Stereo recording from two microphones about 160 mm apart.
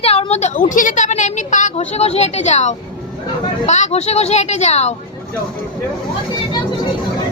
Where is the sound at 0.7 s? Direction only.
55° left (ahead or behind).